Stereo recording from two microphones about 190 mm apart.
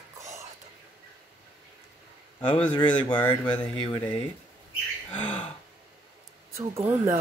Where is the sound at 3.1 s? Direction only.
10° left (ahead or behind).